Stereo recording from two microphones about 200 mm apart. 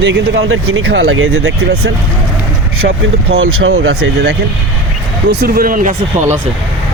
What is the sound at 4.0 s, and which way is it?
Speech, 55° right (ahead or behind).